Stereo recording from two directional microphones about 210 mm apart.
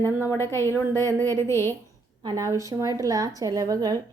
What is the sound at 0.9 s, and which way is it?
Speech, 15° right (ahead or behind).